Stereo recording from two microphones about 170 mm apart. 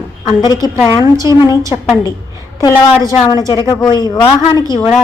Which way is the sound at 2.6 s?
20° left (ahead or behind).